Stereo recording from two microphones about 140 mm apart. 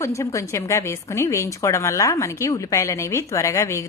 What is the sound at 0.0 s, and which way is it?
A woman's voice, 20° left (ahead or behind).